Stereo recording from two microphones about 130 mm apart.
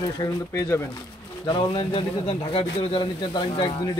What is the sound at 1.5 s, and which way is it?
Speech, 40° left (ahead or behind).